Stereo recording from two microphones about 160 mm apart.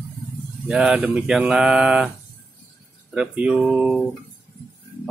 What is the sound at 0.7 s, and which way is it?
Speech, centre (ahead or behind).